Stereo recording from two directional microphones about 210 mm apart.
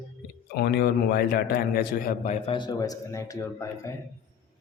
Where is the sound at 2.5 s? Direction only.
20° left (ahead or behind).